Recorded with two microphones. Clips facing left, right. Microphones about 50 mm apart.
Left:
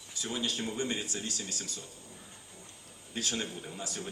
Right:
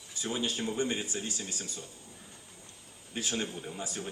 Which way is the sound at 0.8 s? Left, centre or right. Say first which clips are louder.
Right 2 dB; centre.